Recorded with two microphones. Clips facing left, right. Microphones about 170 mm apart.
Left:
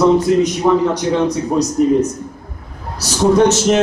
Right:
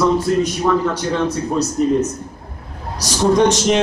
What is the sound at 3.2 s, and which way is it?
Speech, 5° left (ahead or behind).